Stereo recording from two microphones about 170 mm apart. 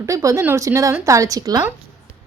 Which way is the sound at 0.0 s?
20° right (ahead or behind).